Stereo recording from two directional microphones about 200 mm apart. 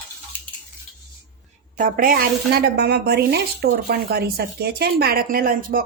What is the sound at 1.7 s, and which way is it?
A woman's voice, 45° right (ahead or behind).